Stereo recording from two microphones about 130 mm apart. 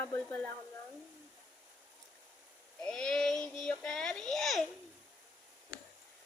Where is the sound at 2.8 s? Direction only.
5° left (ahead or behind).